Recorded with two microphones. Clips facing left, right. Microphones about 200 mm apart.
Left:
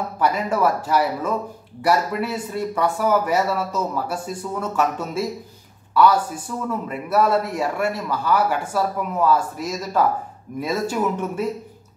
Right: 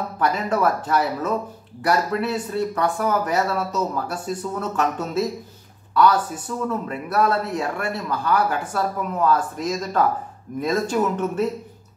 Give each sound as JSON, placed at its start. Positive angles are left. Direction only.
{"t": 0.2, "sound": "a man's voice", "side_deg": 10}